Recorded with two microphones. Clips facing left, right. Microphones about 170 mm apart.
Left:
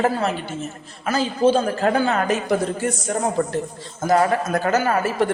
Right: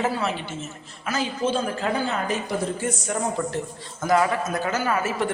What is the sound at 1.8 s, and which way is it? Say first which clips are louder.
A woman's voice: left 6 dB; 55° left (ahead or behind).